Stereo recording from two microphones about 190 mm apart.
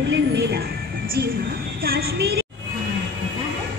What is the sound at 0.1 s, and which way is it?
Music, 60° right (ahead or behind).